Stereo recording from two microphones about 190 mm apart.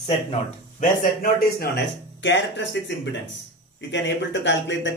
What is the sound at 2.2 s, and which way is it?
Speech, 70° left (ahead or behind).